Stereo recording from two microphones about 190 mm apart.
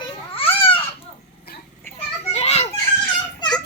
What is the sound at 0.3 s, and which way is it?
Baby cry, 30° left (ahead or behind).